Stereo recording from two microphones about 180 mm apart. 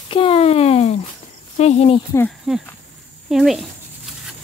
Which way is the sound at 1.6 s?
35° left (ahead or behind).